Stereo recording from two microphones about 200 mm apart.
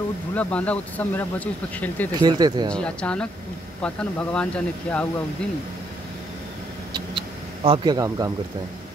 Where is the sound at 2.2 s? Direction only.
20° right (ahead or behind).